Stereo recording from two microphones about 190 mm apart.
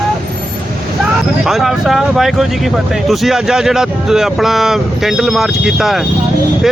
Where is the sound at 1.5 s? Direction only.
Centre (ahead or behind).